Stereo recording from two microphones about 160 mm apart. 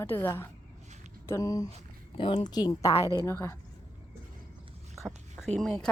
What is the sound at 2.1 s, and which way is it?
A woman's voice, 35° left (ahead or behind).